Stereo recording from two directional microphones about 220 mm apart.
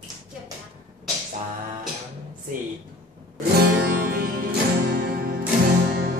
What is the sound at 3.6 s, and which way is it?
Music, 45° right (ahead or behind).